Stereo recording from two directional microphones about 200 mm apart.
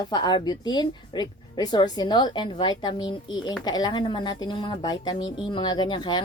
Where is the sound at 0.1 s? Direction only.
20° left (ahead or behind).